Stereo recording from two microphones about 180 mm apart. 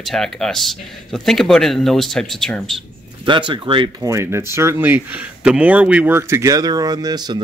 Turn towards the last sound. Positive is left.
turn(degrees=-20)  # may be behind; listen again after turning